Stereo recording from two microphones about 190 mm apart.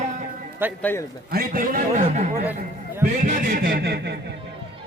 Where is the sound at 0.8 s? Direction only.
10° left (ahead or behind).